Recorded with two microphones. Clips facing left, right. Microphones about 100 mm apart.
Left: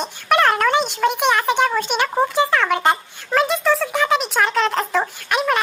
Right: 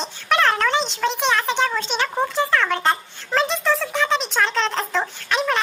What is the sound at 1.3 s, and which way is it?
Speech, 10° left (ahead or behind).